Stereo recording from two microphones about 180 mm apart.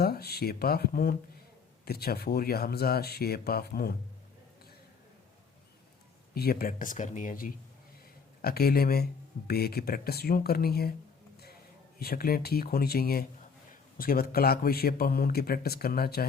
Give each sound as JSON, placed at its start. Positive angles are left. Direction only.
{"t": 0.0, "sound": "speech", "side_deg": 60}
{"t": 6.3, "sound": "speech", "side_deg": 60}
{"t": 11.9, "sound": "speech", "side_deg": 55}